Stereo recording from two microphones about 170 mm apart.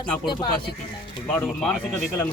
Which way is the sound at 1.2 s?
10° left (ahead or behind).